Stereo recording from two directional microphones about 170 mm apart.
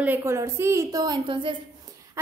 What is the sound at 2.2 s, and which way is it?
Speech, 15° right (ahead or behind).